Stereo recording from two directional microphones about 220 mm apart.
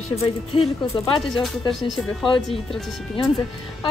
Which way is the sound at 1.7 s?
Centre (ahead or behind).